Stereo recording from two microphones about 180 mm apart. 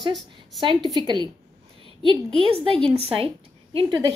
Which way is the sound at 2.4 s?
30° right (ahead or behind).